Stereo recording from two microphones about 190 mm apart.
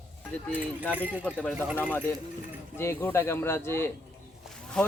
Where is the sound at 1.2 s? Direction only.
5° left (ahead or behind).